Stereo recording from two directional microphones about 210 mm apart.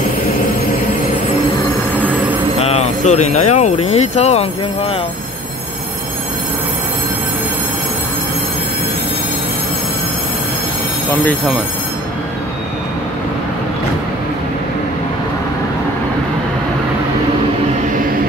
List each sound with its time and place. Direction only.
2.6 s speech: 30° left (ahead or behind)